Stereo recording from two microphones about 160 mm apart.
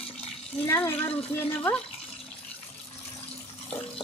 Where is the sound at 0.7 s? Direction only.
15° left (ahead or behind).